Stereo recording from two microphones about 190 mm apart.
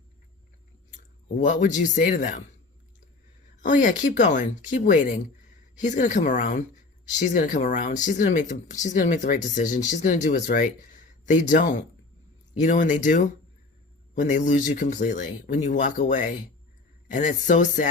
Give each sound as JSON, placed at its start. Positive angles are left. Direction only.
{"t": 1.4, "sound": "speech", "side_deg": 40}
{"t": 3.6, "sound": "speech", "side_deg": 45}